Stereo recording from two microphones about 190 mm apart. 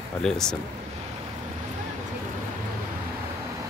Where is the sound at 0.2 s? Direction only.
Centre (ahead or behind).